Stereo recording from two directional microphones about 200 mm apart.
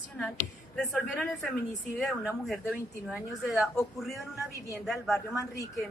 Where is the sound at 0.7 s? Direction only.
Centre (ahead or behind).